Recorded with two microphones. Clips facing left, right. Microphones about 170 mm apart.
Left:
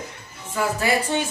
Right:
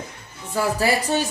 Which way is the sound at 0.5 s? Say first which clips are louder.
Right 1 dB; 35° right (ahead or behind).